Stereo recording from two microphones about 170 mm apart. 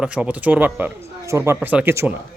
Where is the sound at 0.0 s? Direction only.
5° right (ahead or behind).